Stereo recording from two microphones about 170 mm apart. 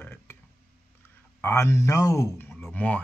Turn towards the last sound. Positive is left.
turn(degrees=10)  # may be behind; listen again after turning